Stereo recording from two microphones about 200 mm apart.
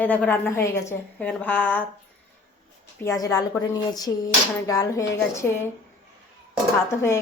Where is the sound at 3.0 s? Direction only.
15° left (ahead or behind).